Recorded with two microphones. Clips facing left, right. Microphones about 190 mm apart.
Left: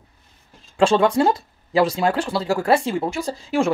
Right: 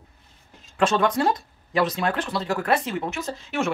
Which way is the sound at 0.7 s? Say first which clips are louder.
Left 5 dB; 30° left (ahead or behind).